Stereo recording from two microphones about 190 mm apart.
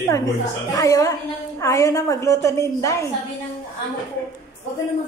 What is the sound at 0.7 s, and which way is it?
A woman's voice, 15° left (ahead or behind).